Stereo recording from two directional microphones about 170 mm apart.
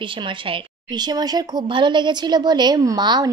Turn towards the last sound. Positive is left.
turn(degrees=-25)  # may be behind; listen again after turning